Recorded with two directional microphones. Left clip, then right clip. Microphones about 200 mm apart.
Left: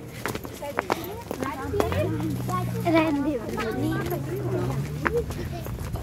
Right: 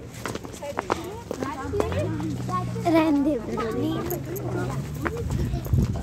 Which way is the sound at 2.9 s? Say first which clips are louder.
Right 1 dB; 55° right (ahead or behind).